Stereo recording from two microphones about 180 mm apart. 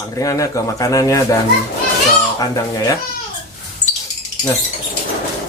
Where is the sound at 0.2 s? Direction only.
20° left (ahead or behind).